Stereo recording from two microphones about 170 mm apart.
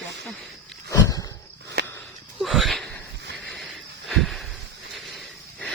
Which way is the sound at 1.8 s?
80° right.